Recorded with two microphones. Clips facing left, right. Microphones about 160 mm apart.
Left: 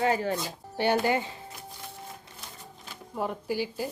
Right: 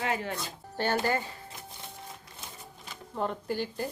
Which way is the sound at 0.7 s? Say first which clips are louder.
Left 3 dB; 15° left (ahead or behind).